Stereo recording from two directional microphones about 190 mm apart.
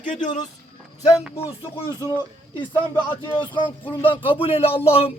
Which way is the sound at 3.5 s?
25° left (ahead or behind).